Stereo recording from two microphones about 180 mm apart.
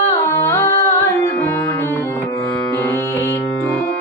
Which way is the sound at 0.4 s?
15° left (ahead or behind).